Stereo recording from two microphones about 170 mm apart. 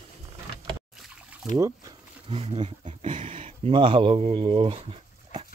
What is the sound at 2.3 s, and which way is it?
Speech, 30° right (ahead or behind).